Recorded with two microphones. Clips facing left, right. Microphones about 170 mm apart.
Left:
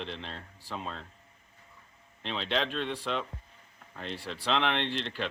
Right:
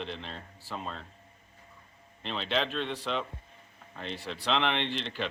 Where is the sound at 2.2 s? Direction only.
Centre (ahead or behind).